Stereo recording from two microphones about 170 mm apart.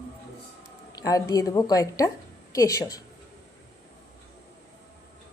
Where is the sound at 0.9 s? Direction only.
20° left (ahead or behind).